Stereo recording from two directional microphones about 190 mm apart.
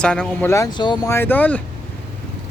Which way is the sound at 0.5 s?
20° left (ahead or behind).